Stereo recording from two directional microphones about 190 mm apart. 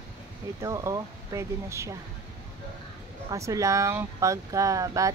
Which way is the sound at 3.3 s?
15° right (ahead or behind).